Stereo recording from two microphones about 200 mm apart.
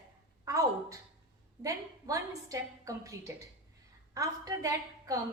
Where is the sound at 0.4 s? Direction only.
15° right (ahead or behind).